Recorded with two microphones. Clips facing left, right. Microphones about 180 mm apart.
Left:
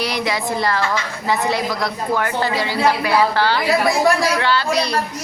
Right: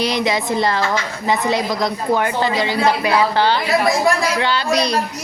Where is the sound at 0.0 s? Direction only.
20° right (ahead or behind).